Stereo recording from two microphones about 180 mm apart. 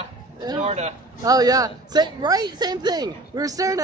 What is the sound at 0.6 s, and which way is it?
Speech, 35° right (ahead or behind).